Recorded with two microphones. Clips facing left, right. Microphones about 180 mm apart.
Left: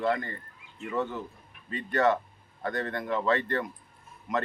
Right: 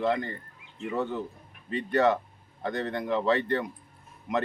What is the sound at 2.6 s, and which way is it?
Speech, 20° right (ahead or behind).